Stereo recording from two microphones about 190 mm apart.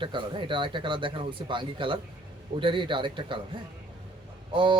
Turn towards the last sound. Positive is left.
turn(degrees=-25)  # may be behind; listen again after turning